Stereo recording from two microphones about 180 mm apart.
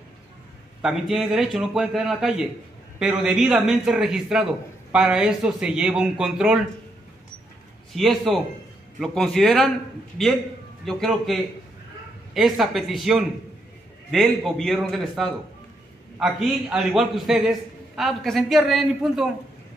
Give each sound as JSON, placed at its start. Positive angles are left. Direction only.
{"t": 0.8, "sound": "a man's voice", "side_deg": 0}
{"t": 7.9, "sound": "a man's voice", "side_deg": 0}
{"t": 10.9, "sound": "a man's voice", "side_deg": 0}
{"t": 12.4, "sound": "a man's voice", "side_deg": 0}